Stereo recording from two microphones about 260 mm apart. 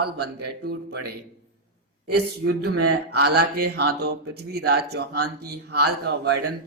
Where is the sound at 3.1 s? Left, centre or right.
Right.